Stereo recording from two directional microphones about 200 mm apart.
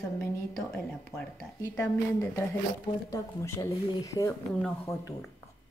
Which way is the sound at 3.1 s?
15° left (ahead or behind).